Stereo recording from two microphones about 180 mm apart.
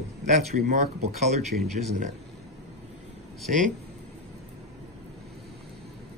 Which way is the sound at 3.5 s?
50° right (ahead or behind).